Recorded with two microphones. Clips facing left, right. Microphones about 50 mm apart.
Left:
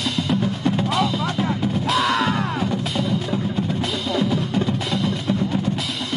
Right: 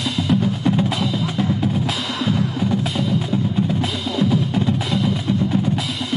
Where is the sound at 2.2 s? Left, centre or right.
Left.